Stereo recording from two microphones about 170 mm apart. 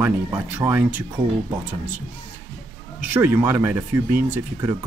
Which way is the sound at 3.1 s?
15° right (ahead or behind).